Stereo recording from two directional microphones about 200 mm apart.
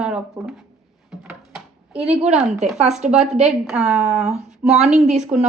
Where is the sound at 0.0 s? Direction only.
5° right (ahead or behind).